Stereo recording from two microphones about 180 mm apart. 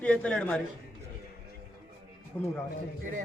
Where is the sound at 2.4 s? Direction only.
10° left (ahead or behind).